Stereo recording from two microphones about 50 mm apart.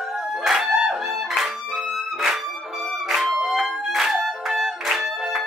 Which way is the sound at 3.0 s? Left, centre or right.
Centre.